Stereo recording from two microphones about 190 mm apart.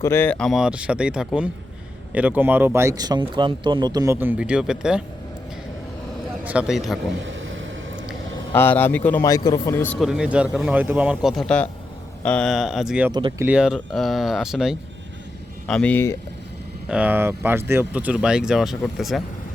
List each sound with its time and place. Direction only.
0.0 s speech: 10° left (ahead or behind)
6.2 s a man's voice: 5° right (ahead or behind)
7.2 s a sound: 85° right
8.5 s a man's voice: 10° left (ahead or behind)
10.0 s a man's voice: 5° right (ahead or behind)
16.9 s speech: 10° right (ahead or behind)